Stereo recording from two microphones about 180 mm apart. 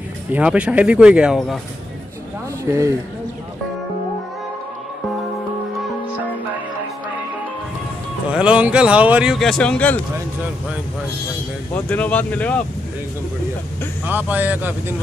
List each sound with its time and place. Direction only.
0.3 s speech: 5° right (ahead or behind)
2.6 s speech: 15° right (ahead or behind)
8.3 s speech: 5° right (ahead or behind)
11.7 s speech: 10° left (ahead or behind)
14.0 s speech: 10° right (ahead or behind)